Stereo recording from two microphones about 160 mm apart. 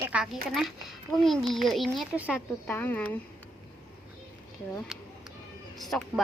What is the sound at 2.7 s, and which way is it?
Speech, 10° left (ahead or behind).